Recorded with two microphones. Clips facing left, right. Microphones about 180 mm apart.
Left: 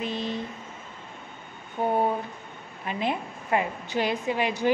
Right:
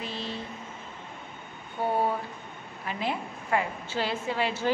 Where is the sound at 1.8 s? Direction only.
20° left (ahead or behind).